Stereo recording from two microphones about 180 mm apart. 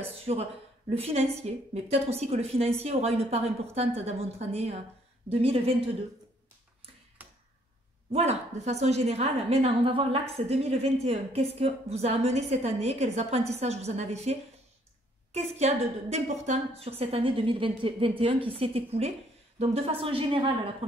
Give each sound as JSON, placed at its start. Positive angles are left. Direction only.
{"t": 0.3, "sound": "a woman's voice", "side_deg": -35}
{"t": 8.1, "sound": "a woman's voice", "side_deg": -35}